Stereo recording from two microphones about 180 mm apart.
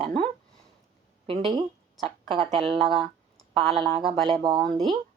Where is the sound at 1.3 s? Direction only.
30° right (ahead or behind).